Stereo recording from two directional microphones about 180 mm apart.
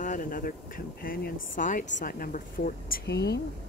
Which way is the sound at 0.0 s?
45° left (ahead or behind).